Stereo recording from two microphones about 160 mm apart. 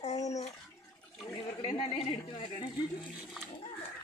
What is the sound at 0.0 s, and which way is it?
Bathtub, 45° left (ahead or behind).